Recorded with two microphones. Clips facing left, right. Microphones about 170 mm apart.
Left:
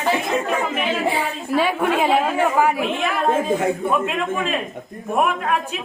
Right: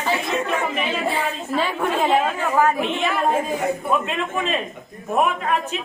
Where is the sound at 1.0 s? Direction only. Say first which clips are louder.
Left 2 dB; 10° left (ahead or behind).